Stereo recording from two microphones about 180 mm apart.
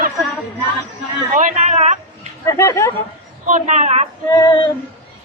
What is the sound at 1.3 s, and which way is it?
Speech, 45° right (ahead or behind).